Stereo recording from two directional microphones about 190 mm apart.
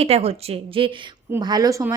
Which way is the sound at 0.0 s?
30° right (ahead or behind).